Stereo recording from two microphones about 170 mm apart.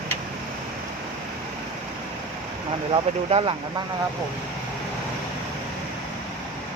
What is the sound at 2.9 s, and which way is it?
Speech, 35° right (ahead or behind).